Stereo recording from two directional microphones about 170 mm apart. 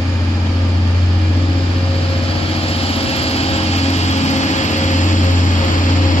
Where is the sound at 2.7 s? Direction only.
35° left (ahead or behind).